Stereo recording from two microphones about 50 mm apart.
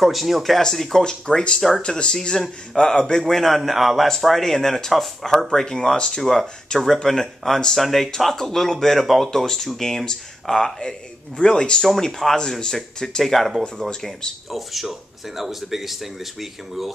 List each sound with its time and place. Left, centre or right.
0.0 s speech: centre
14.5 s speech: centre